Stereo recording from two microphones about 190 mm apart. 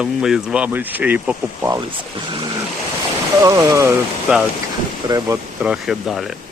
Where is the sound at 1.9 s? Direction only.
25° right (ahead or behind).